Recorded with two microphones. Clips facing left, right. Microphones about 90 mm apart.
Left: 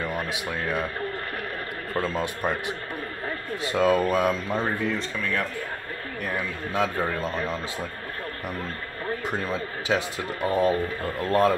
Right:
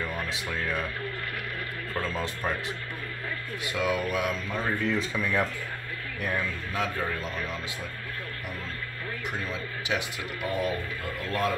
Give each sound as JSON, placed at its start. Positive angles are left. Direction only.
{"t": 2.1, "sound": "speech", "side_deg": 20}
{"t": 3.3, "sound": "speech", "side_deg": 35}
{"t": 4.8, "sound": "speech", "side_deg": -5}
{"t": 6.7, "sound": "speech", "side_deg": 30}
{"t": 9.4, "sound": "speech", "side_deg": 35}